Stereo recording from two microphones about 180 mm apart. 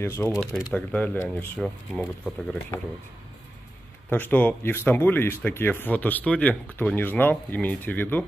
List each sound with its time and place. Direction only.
0.0 s speech: 15° left (ahead or behind)
1.6 s speech: centre (ahead or behind)
2.7 s speech: 15° left (ahead or behind)
4.1 s speech: 10° left (ahead or behind)